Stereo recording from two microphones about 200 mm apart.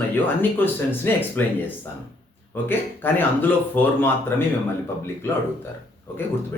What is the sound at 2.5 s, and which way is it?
Speech, 10° left (ahead or behind).